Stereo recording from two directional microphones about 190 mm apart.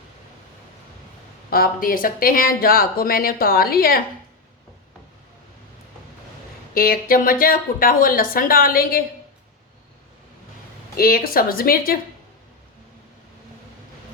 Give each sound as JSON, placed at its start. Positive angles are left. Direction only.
{"t": 1.5, "sound": "speech", "side_deg": 50}
{"t": 6.7, "sound": "speech", "side_deg": 50}
{"t": 10.9, "sound": "speech", "side_deg": 50}